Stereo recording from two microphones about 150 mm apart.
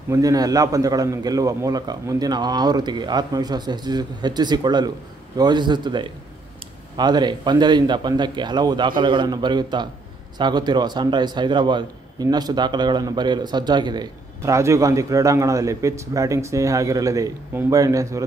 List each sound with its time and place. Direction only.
0.1 s a man's voice: 25° right (ahead or behind)